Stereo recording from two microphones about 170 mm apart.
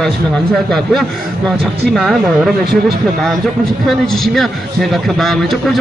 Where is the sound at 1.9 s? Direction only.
Centre (ahead or behind).